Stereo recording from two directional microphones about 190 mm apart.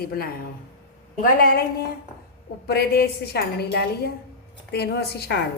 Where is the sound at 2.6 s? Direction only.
55° left (ahead or behind).